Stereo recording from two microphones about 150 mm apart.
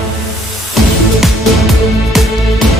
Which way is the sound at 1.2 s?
Centre (ahead or behind).